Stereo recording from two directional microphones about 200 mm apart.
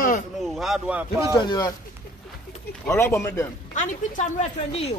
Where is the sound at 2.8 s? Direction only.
10° left (ahead or behind).